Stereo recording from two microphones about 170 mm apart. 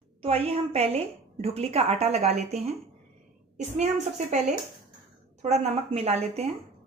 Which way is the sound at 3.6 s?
45° right (ahead or behind).